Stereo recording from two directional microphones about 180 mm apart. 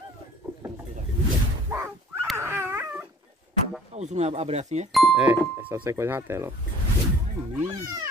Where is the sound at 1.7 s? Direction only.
10° right (ahead or behind).